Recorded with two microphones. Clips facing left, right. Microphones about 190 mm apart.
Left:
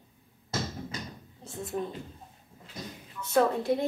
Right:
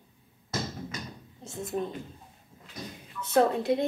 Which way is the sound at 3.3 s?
20° right (ahead or behind).